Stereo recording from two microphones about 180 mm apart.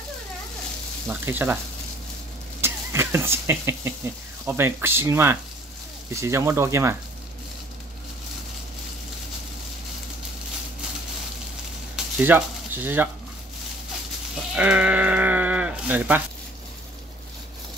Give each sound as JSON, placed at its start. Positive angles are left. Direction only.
{"t": 1.0, "sound": "speech", "side_deg": -10}
{"t": 2.6, "sound": "speech", "side_deg": -15}
{"t": 12.2, "sound": "speech", "side_deg": -10}
{"t": 14.5, "sound": "sheep", "side_deg": -5}